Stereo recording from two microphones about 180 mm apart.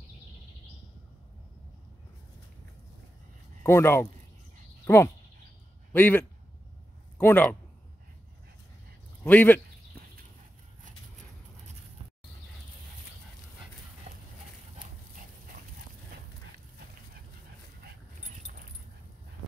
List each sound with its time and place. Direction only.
3.6 s speech: 15° left (ahead or behind)
9.2 s speech: 10° left (ahead or behind)
14.1 s clip-clop: 45° right (ahead or behind)